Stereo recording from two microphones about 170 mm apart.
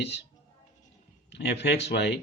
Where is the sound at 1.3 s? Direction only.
90° left.